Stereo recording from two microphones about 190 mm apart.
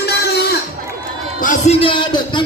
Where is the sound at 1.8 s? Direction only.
25° left (ahead or behind).